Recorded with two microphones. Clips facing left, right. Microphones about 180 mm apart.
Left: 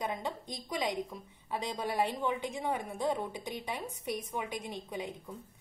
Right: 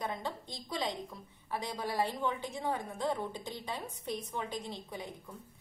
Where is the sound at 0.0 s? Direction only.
15° left (ahead or behind).